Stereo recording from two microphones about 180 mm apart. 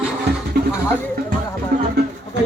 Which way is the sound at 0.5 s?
60° right (ahead or behind).